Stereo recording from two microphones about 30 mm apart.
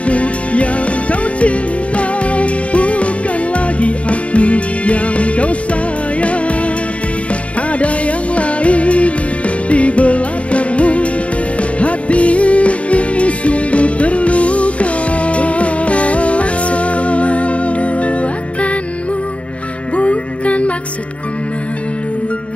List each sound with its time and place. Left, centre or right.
0.0 s music: left
8.4 s music: left
20.0 s music: left